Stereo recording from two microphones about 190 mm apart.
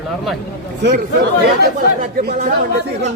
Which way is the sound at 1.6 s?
55° right (ahead or behind).